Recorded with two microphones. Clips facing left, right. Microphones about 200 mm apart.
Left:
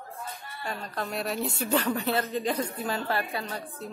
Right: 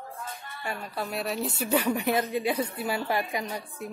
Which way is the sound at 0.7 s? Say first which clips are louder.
Right 1 dB; 10° right (ahead or behind).